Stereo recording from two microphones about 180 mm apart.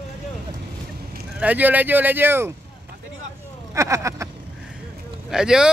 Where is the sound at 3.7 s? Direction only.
15° right (ahead or behind).